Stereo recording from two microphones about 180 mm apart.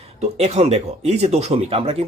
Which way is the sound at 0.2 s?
35° right (ahead or behind).